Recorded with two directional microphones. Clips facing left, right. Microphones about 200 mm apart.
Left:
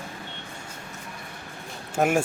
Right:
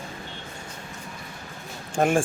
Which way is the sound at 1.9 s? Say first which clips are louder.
Right 1 dB; 10° left (ahead or behind).